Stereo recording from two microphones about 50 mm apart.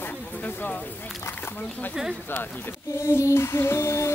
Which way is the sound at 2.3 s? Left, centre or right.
Left.